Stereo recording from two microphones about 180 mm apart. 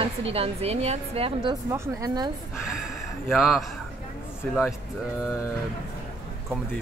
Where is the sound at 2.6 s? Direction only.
Centre (ahead or behind).